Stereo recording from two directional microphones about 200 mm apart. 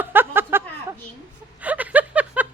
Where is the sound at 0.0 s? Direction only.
10° right (ahead or behind).